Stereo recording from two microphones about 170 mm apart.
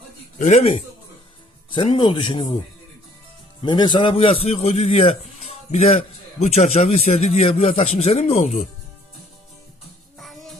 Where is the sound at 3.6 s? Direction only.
25° left (ahead or behind).